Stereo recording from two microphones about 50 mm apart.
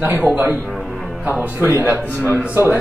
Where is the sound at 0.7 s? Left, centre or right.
Centre.